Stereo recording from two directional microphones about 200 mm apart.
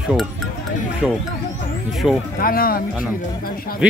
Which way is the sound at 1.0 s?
Centre (ahead or behind).